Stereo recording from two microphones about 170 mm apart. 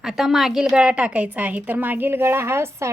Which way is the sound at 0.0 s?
Centre (ahead or behind).